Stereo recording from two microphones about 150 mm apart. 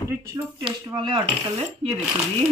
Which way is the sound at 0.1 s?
20° right (ahead or behind).